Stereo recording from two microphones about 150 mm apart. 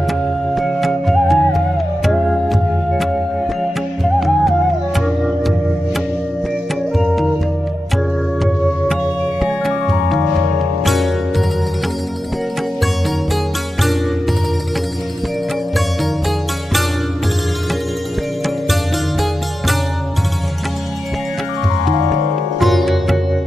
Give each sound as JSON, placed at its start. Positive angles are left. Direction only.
{"t": 0.6, "sound": "music", "side_deg": 0}
{"t": 4.0, "sound": "music", "side_deg": 0}
{"t": 7.0, "sound": "music", "side_deg": 0}
{"t": 8.8, "sound": "music", "side_deg": 0}
{"t": 22.6, "sound": "sitar", "side_deg": 0}